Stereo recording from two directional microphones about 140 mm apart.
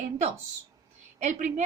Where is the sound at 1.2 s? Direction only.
55° right (ahead or behind).